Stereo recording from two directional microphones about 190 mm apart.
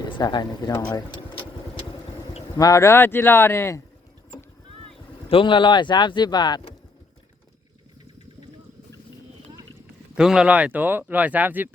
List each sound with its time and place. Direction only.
0.0 s speech: 20° left (ahead or behind)
2.6 s speech: 15° left (ahead or behind)
5.3 s speech: 25° left (ahead or behind)
10.2 s speech: 5° right (ahead or behind)